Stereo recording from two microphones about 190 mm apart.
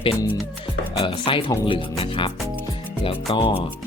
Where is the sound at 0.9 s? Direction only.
25° left (ahead or behind).